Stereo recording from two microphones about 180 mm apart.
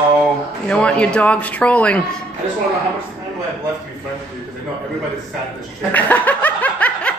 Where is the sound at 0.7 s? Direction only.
5° left (ahead or behind).